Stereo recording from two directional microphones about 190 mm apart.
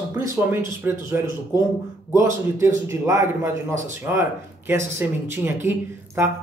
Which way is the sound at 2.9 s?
15° right (ahead or behind).